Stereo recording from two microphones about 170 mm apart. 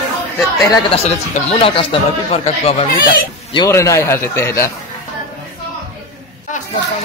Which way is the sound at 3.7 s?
15° left (ahead or behind).